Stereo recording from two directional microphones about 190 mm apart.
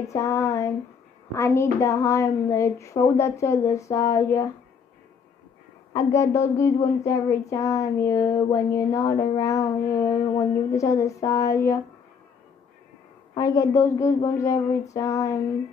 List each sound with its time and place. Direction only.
0.1 s child singing: 15° left (ahead or behind)
5.9 s child singing: 15° left (ahead or behind)
13.3 s child singing: 15° left (ahead or behind)